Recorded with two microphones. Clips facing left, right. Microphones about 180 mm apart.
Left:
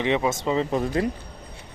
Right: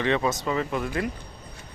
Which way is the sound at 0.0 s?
15° left (ahead or behind).